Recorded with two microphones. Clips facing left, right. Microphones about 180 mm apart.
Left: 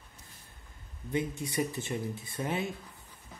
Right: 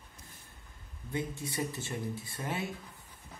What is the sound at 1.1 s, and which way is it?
Speech, 20° left (ahead or behind).